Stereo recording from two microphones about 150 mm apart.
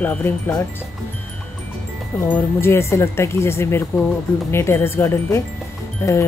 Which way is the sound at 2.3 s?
15° left (ahead or behind).